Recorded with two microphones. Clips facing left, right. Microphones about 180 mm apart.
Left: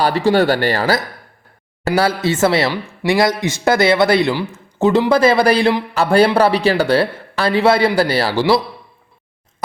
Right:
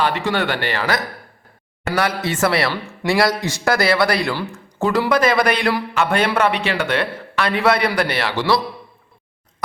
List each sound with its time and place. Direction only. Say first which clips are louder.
0.0 s speech: left 6 dB; 35° left (ahead or behind)